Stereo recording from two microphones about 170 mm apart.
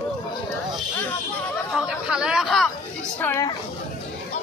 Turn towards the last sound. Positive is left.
turn(degrees=15)  # may be behind; listen again after turning